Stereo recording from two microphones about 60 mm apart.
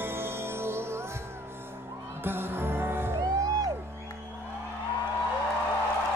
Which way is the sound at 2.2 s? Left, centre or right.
Right.